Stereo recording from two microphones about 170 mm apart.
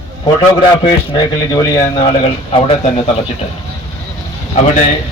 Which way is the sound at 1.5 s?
20° left (ahead or behind).